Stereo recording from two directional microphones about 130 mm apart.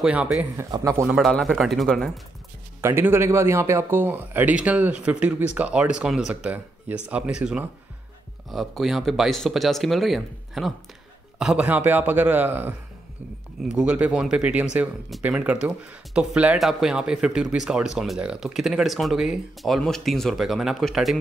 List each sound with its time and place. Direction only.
0.0 s speech: 10° right (ahead or behind)
0.7 s a man's voice: 30° right (ahead or behind)
1.0 s speech: centre (ahead or behind)
2.8 s speech: 20° right (ahead or behind); by 21.2 s centre (ahead or behind)